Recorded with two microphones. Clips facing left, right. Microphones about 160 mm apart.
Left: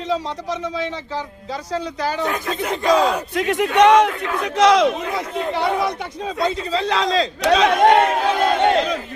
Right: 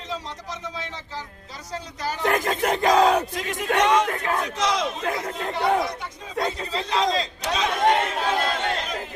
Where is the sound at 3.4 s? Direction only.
70° left (ahead or behind).